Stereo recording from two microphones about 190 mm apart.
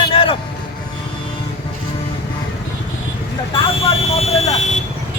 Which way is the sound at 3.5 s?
30° left (ahead or behind).